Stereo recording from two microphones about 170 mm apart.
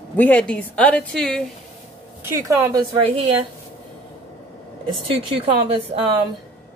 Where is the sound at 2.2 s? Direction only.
20° right (ahead or behind).